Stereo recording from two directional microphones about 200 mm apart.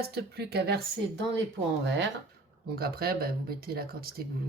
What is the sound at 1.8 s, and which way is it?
Speech, 65° right (ahead or behind).